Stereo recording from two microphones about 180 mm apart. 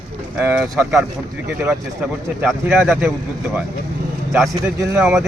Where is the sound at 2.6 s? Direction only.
10° right (ahead or behind).